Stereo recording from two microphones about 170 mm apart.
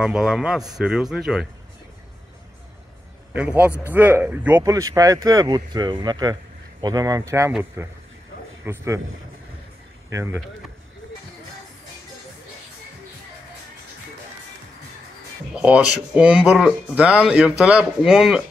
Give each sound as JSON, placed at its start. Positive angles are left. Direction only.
{"t": 0.0, "sound": "speech", "side_deg": -5}
{"t": 3.3, "sound": "a man's voice", "side_deg": -10}
{"t": 10.1, "sound": "a man's voice", "side_deg": -15}
{"t": 15.5, "sound": "speech", "side_deg": -5}